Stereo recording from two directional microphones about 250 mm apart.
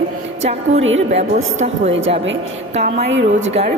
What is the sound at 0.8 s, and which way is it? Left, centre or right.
Speech, right.